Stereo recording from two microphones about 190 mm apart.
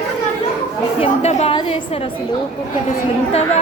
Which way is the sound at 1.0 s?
30° left (ahead or behind).